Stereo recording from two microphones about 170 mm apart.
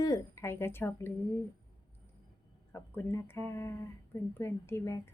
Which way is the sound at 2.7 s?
15° left (ahead or behind).